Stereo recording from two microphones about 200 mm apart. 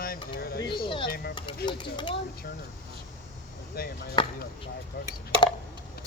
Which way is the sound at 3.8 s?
50° left (ahead or behind).